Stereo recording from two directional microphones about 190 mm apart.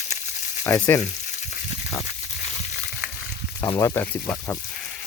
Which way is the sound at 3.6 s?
15° left (ahead or behind).